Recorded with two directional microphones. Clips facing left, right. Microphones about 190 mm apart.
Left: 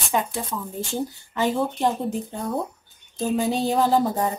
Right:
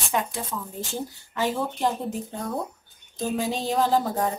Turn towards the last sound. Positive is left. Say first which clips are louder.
# left 2 dB
turn(degrees=5)  # may be behind; listen again after turning